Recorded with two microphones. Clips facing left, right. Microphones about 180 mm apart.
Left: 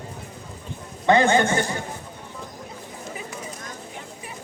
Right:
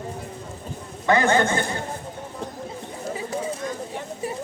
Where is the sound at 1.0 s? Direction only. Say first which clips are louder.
Left 2 dB; 20° left (ahead or behind).